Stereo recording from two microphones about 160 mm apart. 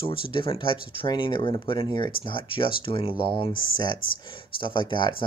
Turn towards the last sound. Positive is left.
turn(degrees=30)  # may be behind; listen again after turning